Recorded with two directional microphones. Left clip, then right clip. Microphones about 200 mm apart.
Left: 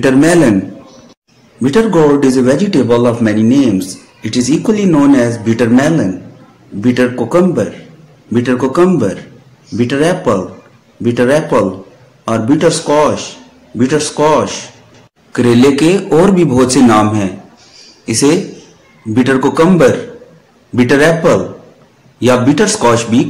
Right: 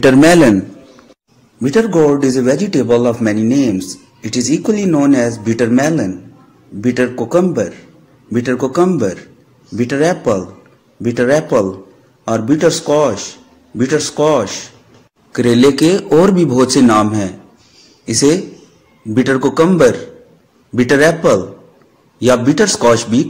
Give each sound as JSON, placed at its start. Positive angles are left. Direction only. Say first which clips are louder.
{"t": 0.0, "sound": "a man's voice", "louder": "right 1 dB", "side_deg": -35}
{"t": 1.6, "sound": "a man's voice", "louder": "left 2 dB", "side_deg": -20}